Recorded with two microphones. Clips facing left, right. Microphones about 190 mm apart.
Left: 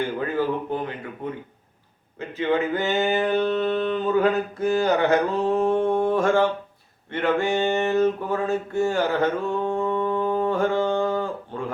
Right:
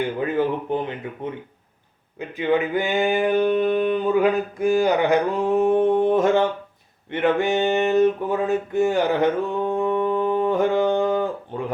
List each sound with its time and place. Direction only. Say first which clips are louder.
0.0 s speech: right 2 dB; 20° right (ahead or behind)
2.1 s mantra: right 2 dB; 15° right (ahead or behind)
7.1 s a sound: right 2 dB; 15° right (ahead or behind)